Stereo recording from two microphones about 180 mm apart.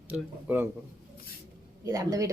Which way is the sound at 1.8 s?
20° right (ahead or behind).